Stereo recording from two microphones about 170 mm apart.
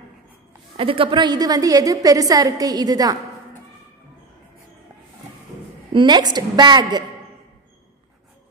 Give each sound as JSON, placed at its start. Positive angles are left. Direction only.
{"t": 0.7, "sound": "a woman's voice", "side_deg": -30}
{"t": 5.9, "sound": "a woman's voice", "side_deg": -25}